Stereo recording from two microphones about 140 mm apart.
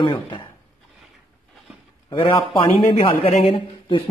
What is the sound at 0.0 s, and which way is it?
Speech, 35° left (ahead or behind).